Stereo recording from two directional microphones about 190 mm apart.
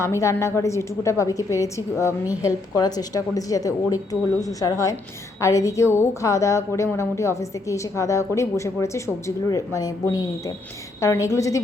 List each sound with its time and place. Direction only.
0.0 s a woman's voice: 15° left (ahead or behind)